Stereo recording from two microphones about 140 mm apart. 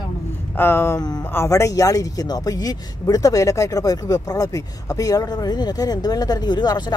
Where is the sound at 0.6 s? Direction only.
15° left (ahead or behind).